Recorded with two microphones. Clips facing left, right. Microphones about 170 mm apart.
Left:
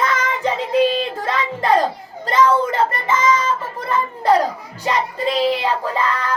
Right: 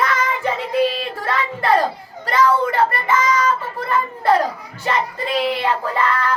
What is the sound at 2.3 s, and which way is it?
Speech, 20° left (ahead or behind).